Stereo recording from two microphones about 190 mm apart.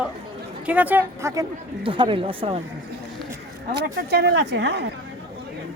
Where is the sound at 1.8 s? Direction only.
25° right (ahead or behind).